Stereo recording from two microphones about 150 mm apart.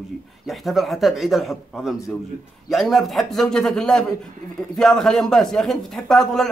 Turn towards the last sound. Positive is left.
turn(degrees=5)  # may be behind; listen again after turning